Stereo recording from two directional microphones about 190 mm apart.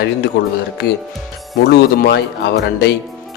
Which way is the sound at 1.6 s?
60° left (ahead or behind).